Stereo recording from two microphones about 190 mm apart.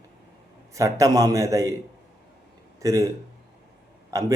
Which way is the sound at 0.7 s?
15° right (ahead or behind).